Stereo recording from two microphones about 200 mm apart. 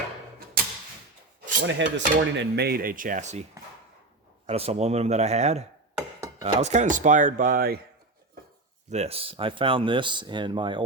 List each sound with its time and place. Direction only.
1.6 s dishes: 65° right (ahead or behind); by 3.4 s 35° right (ahead or behind)
4.4 s speech: 30° right (ahead or behind); by 7.8 s 45° right (ahead or behind)
8.9 s speech: 30° right (ahead or behind)